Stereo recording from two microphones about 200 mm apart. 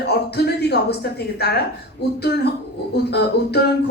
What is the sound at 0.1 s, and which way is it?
Speech, 55° left (ahead or behind).